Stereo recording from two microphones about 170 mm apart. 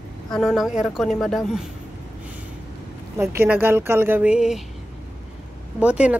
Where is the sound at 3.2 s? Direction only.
15° right (ahead or behind).